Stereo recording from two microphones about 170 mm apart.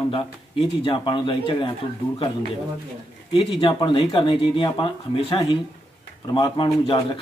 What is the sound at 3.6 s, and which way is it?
A man's voice, 30° left (ahead or behind).